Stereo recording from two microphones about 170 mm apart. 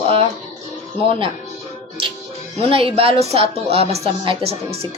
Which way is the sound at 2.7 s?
35° right (ahead or behind).